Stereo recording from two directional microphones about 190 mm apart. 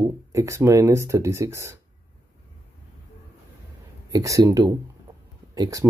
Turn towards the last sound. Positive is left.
turn(degrees=-20)  # may be behind; listen again after turning